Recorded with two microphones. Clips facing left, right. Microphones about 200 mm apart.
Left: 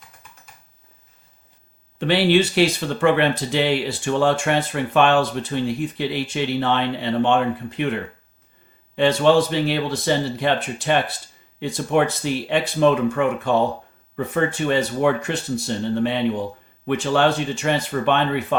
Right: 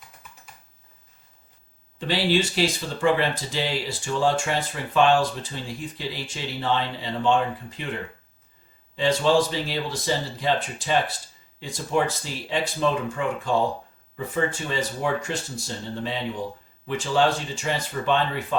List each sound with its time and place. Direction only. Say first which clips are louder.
2.0 s speech: left 6 dB; 65° left (ahead or behind)
9.0 s speech: left 4 dB; 65° left (ahead or behind)